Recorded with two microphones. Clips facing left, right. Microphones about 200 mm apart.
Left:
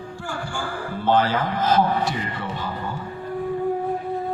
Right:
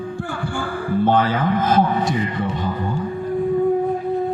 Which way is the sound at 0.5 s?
55° right (ahead or behind).